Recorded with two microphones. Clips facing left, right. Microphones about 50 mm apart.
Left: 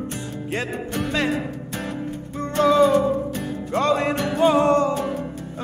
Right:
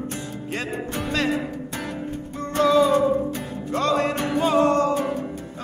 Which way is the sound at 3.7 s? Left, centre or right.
Left.